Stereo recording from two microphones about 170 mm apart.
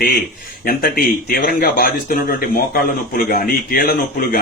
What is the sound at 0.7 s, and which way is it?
Speech, 60° left (ahead or behind).